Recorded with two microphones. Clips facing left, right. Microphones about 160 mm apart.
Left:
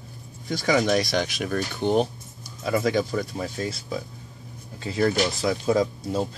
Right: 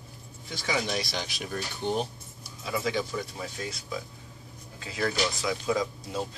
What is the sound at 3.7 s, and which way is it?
Speech, 35° left (ahead or behind).